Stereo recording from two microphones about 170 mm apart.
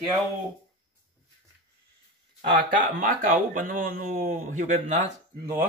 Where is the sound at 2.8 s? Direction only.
55° right (ahead or behind).